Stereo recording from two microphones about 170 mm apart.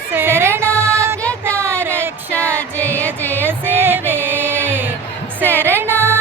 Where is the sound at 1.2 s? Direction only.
5° left (ahead or behind).